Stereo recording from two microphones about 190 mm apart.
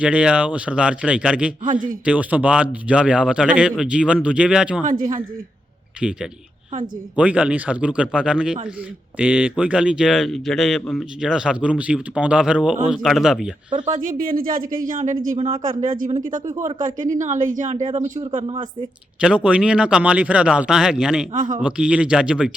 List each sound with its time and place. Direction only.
0.0 s speech: 5° right (ahead or behind)
6.0 s speech: 5° right (ahead or behind)
13.7 s speech: 25° right (ahead or behind)
14.1 s a woman's voice: 50° right (ahead or behind)
18.4 s speech: 25° right (ahead or behind)
19.2 s speech: 5° right (ahead or behind)
21.3 s speech: 45° right (ahead or behind)
21.6 s speech: 5° right (ahead or behind)